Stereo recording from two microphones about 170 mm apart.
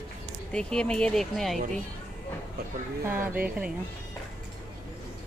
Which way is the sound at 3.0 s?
10° right (ahead or behind).